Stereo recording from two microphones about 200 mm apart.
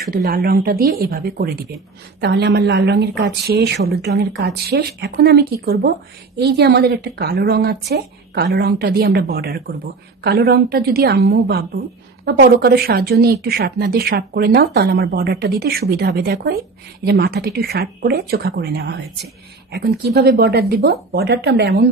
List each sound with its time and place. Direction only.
0.1 s speech: 50° right (ahead or behind)
20.2 s speech: 50° right (ahead or behind)